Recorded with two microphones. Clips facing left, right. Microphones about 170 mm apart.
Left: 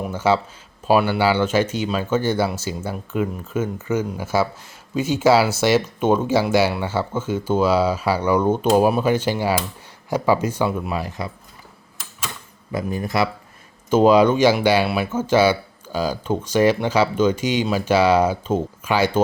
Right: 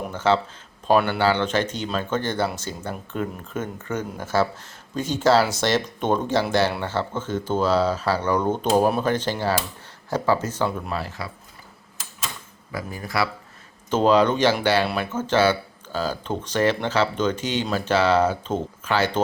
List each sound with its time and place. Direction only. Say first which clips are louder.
0.0 s speech: left 2 dB; 10° left (ahead or behind)
12.7 s speech: left 5 dB; 20° left (ahead or behind)
13.9 s speech: left 4 dB; 10° left (ahead or behind)